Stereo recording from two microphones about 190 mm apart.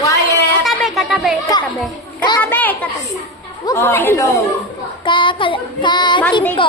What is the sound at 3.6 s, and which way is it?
Speech, 15° left (ahead or behind).